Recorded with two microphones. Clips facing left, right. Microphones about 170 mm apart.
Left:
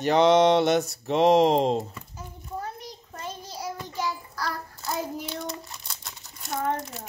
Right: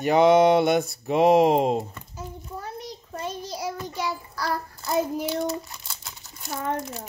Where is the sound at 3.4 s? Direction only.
75° right (ahead or behind).